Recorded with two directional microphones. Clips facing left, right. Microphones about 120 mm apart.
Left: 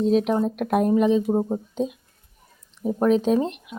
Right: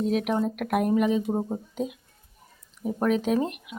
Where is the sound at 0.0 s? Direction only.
30° left (ahead or behind).